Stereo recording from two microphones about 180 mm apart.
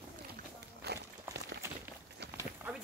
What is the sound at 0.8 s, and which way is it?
Walk, 65° right (ahead or behind).